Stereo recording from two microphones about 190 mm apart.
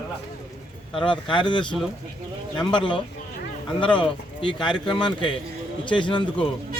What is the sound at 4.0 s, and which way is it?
Speech, 25° left (ahead or behind).